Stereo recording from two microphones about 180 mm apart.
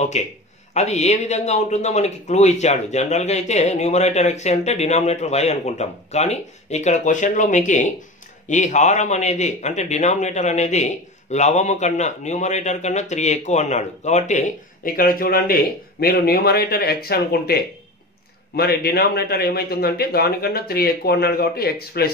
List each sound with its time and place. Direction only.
0.2 s speech: 40° left (ahead or behind)
15.0 s speech: 50° left (ahead or behind)
18.6 s speech: 60° left (ahead or behind)